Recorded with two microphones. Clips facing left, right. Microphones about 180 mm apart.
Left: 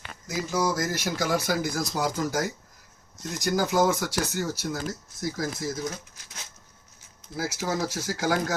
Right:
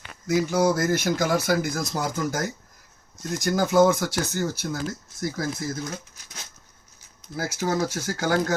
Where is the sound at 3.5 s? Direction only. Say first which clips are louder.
Right 4 dB; 50° right (ahead or behind).